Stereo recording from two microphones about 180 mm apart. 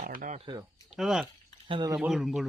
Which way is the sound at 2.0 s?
Centre (ahead or behind).